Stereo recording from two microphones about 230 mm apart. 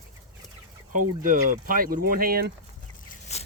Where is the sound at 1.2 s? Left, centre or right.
Right.